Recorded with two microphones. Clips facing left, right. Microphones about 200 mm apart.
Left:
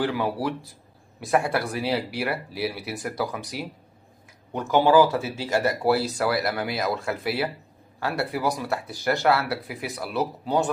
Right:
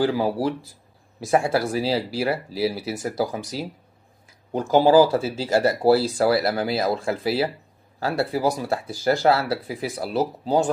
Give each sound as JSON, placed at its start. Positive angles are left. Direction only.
{"t": 0.0, "sound": "speech", "side_deg": -30}